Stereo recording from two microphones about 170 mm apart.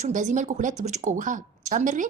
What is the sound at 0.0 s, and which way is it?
Speech, 45° right (ahead or behind).